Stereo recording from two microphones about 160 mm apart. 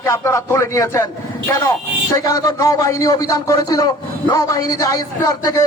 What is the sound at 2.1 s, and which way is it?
A man's voice, 25° left (ahead or behind).